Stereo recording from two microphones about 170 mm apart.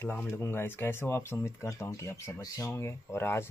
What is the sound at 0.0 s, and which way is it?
Speech, 10° left (ahead or behind).